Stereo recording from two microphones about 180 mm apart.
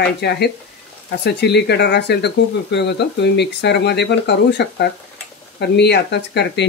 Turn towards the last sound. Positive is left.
turn(degrees=70)  # may be behind; listen again after turning